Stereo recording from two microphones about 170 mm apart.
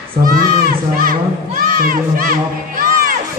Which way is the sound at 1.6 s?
55° right (ahead or behind).